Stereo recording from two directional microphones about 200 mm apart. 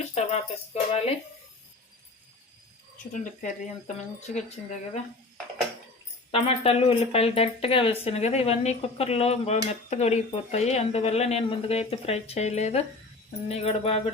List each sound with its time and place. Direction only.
0.1 s speech: 30° left (ahead or behind)
3.1 s speech: 40° left (ahead or behind)
6.3 s speech: 30° left (ahead or behind)